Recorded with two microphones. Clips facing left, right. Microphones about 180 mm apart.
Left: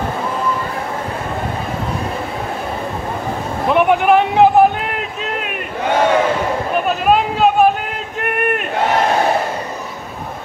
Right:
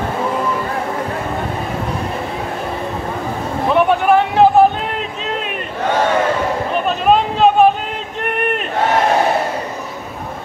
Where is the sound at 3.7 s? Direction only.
15° left (ahead or behind).